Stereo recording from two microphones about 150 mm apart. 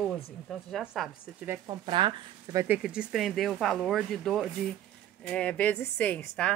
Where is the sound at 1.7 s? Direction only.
35° right (ahead or behind).